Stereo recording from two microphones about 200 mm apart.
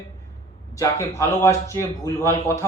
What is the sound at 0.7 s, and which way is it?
Speech, 15° left (ahead or behind).